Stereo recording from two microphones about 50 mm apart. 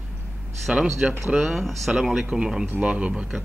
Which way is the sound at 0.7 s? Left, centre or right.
Centre.